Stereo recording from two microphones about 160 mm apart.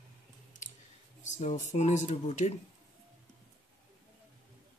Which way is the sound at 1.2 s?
50° left (ahead or behind).